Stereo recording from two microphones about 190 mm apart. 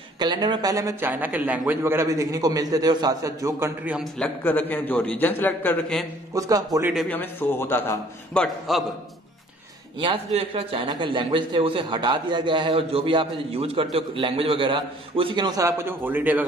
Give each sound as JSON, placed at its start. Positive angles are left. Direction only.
{"t": 0.2, "sound": "a man's voice", "side_deg": -20}
{"t": 4.4, "sound": "a man's voice", "side_deg": 10}
{"t": 6.3, "sound": "a man's voice", "side_deg": -20}
{"t": 7.1, "sound": "a man's voice", "side_deg": 10}
{"t": 9.9, "sound": "a man's voice", "side_deg": -30}